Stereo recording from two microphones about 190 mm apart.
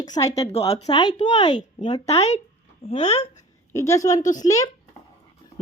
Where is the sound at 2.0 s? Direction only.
35° left (ahead or behind).